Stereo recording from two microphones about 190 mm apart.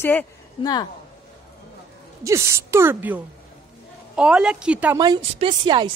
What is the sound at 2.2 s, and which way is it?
A woman's voice, 15° right (ahead or behind).